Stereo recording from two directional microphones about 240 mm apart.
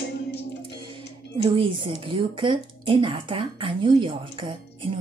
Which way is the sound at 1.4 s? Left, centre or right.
Right.